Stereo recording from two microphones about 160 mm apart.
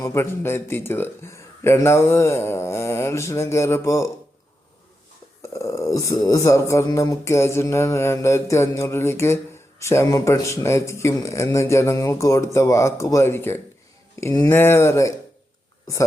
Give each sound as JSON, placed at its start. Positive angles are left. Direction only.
{"t": 0.0, "sound": "a man's voice", "side_deg": 15}
{"t": 5.4, "sound": "a man's voice", "side_deg": 20}